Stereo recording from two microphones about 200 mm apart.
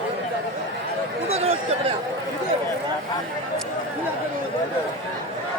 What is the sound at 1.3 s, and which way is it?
Speech, 30° right (ahead or behind).